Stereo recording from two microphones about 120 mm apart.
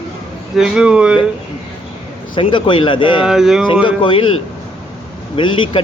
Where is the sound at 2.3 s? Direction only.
45° left (ahead or behind).